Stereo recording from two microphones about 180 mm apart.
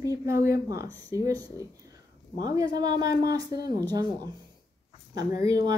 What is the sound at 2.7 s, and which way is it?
A woman's voice, 20° right (ahead or behind).